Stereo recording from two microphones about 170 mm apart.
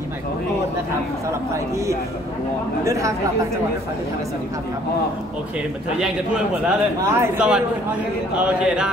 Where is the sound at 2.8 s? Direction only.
20° right (ahead or behind).